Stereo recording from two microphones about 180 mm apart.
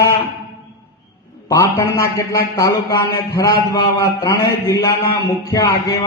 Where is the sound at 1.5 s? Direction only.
15° left (ahead or behind).